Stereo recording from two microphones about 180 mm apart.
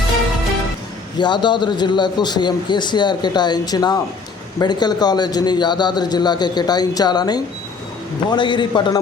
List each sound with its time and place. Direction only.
1.2 s a man's voice: 25° left (ahead or behind)